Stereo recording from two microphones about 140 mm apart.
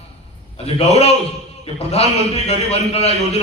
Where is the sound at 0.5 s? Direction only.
45° left (ahead or behind).